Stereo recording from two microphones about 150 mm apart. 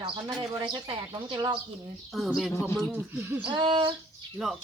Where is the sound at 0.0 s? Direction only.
30° right (ahead or behind).